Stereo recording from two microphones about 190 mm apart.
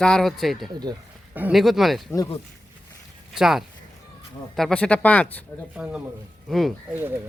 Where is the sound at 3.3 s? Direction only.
Centre (ahead or behind).